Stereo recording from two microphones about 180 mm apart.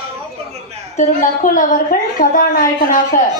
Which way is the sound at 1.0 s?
45° left (ahead or behind).